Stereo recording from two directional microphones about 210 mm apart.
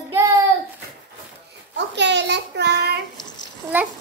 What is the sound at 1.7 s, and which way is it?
A child's voice, 55° right (ahead or behind).